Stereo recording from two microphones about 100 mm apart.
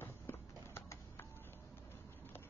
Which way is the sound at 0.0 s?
25° left (ahead or behind).